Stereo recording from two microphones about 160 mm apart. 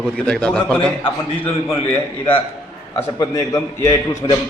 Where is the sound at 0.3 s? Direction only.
5° left (ahead or behind).